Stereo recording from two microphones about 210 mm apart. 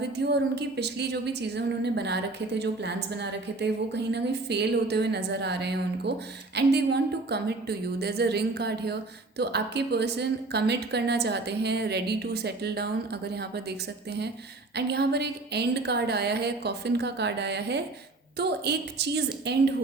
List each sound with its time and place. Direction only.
0.0 s a woman's voice: 50° right (ahead or behind)
14.8 s a woman's voice: 50° right (ahead or behind)